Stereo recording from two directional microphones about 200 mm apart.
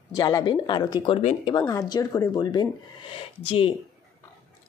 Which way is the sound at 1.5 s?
20° left (ahead or behind).